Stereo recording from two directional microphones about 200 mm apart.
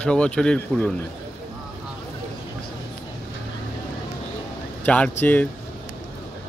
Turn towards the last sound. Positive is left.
turn(degrees=10)  # may be behind; listen again after turning